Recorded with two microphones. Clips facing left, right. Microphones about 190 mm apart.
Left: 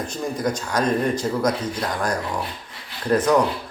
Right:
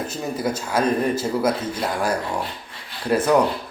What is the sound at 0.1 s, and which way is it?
Speech, 5° right (ahead or behind).